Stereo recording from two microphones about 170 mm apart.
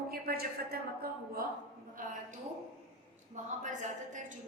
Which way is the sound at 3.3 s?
45° right (ahead or behind).